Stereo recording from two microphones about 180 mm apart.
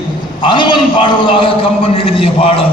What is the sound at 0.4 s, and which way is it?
A man's voice, 25° left (ahead or behind).